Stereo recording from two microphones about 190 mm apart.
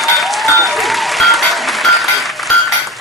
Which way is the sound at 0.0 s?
Centre (ahead or behind).